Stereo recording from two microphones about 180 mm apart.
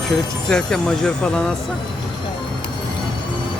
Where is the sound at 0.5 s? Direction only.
5° left (ahead or behind).